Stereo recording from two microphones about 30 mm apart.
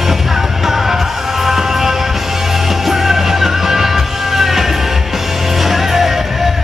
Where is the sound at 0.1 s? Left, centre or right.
Centre.